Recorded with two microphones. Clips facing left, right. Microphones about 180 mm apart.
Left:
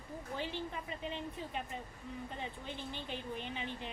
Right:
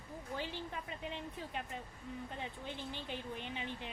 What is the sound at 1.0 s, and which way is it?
Speech, 5° right (ahead or behind).